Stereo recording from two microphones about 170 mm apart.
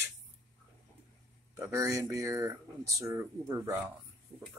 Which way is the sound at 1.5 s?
15° right (ahead or behind).